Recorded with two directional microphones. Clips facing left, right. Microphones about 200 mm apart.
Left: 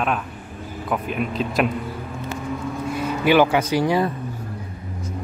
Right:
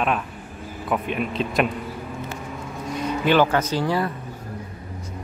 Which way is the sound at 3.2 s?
10° left (ahead or behind).